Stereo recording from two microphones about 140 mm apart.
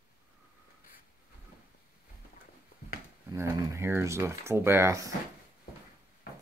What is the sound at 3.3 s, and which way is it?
Speech, 20° right (ahead or behind).